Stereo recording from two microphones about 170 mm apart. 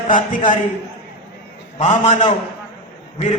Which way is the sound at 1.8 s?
45° left (ahead or behind).